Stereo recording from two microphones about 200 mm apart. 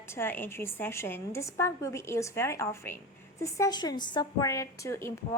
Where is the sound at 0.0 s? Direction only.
10° left (ahead or behind).